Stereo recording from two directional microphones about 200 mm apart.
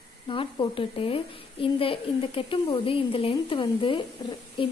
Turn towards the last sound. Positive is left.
turn(degrees=25)  # may be behind; listen again after turning